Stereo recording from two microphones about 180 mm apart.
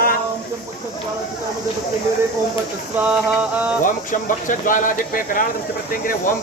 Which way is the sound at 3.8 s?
45° left (ahead or behind).